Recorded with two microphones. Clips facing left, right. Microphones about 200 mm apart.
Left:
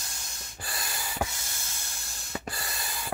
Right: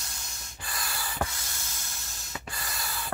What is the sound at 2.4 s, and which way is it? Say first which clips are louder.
Sanding: left 3 dB; 35° left (ahead or behind).